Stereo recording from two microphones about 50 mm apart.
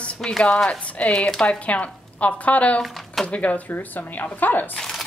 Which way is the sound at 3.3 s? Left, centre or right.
Left.